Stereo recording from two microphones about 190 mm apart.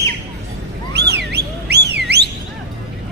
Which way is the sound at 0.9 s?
60° right (ahead or behind).